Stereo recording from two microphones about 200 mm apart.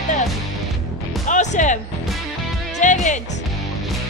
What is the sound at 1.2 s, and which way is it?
Music, 35° left (ahead or behind).